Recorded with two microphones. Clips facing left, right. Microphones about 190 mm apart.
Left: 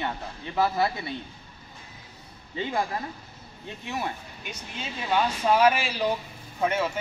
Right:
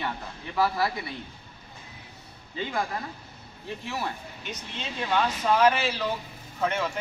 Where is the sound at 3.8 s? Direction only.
20° left (ahead or behind).